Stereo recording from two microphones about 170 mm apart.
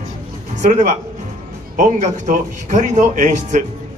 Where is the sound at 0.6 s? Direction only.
45° right (ahead or behind).